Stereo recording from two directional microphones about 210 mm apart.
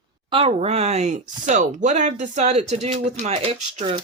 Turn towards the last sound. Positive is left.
turn(degrees=-30)  # may be behind; listen again after turning